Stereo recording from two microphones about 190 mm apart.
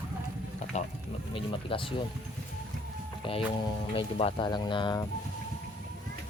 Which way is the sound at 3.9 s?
30° left (ahead or behind).